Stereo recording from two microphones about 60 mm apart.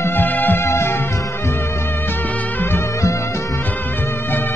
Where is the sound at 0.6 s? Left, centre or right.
Left.